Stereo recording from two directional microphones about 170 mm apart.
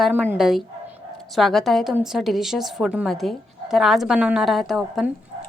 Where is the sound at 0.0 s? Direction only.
5° right (ahead or behind).